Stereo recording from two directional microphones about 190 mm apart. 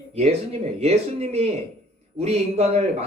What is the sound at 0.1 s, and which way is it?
Speech, 35° right (ahead or behind).